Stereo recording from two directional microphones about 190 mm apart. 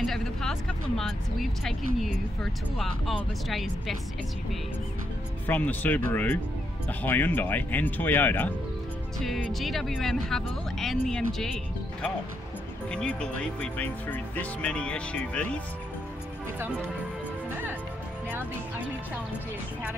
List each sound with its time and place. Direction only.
0.0 s speech: centre (ahead or behind)
5.5 s speech: 10° left (ahead or behind)
12.9 s speech: 5° left (ahead or behind)